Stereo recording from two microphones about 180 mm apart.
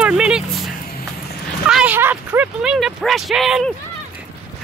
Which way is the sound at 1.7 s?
5° right (ahead or behind).